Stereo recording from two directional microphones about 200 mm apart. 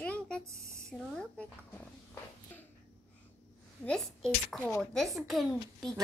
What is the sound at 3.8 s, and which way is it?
A child's voice, 5° left (ahead or behind).